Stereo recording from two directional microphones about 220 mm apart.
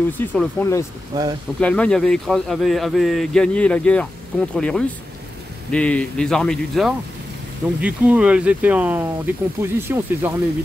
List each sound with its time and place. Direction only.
0.3 s speech: 10° left (ahead or behind)
1.1 s speech: 20° right (ahead or behind)
1.6 s speech: 5° left (ahead or behind); by 10.3 s 10° right (ahead or behind)